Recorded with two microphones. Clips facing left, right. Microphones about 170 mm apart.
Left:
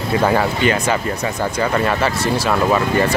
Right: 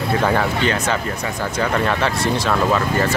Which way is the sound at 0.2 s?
10° left (ahead or behind).